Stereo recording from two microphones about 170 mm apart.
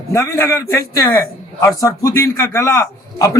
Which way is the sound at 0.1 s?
15° left (ahead or behind).